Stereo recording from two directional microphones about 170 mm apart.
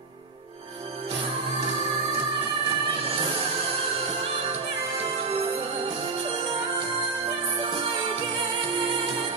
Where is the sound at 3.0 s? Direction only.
35° right (ahead or behind).